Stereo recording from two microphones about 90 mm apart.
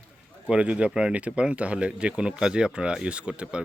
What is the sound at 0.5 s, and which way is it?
Speech, 15° right (ahead or behind).